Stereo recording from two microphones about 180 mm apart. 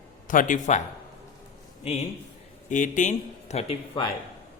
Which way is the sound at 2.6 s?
45° left (ahead or behind).